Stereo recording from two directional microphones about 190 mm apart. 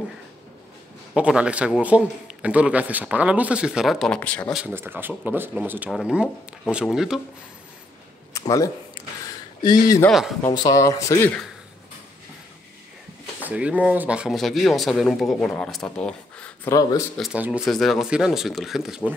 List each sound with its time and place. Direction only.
1.1 s speech: 5° right (ahead or behind)
4.5 s speech: 5° right (ahead or behind)
8.3 s a sound: 15° left (ahead or behind)
9.6 s speech: 20° left (ahead or behind)
10.0 s speech: centre (ahead or behind)
10.5 s speech: 20° left (ahead or behind)
13.4 s speech: 5° right (ahead or behind)
17.2 s speech: 5° right (ahead or behind)